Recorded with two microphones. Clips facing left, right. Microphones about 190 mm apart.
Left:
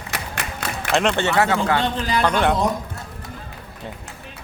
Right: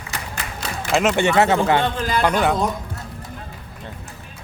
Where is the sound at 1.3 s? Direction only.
25° right (ahead or behind).